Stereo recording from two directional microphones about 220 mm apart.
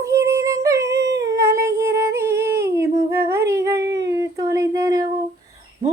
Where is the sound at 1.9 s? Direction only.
15° right (ahead or behind).